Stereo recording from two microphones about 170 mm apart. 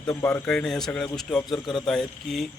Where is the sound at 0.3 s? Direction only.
5° left (ahead or behind).